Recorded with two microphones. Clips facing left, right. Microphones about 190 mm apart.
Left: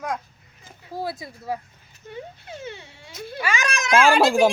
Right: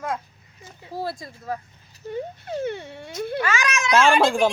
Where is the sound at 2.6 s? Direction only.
55° right (ahead or behind).